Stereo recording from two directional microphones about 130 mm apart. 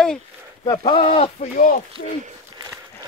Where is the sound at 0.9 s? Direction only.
50° left (ahead or behind).